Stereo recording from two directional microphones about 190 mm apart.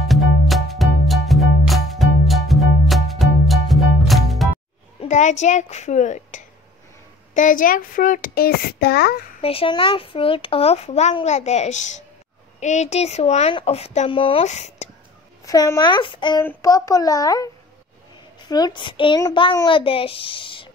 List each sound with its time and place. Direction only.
0.1 s music: centre (ahead or behind)
5.0 s a child's voice: 40° left (ahead or behind); by 9.2 s 55° left (ahead or behind)
9.4 s speech: 30° left (ahead or behind)
15.4 s a woman's voice: 20° left (ahead or behind)
18.5 s a woman's voice: 20° left (ahead or behind)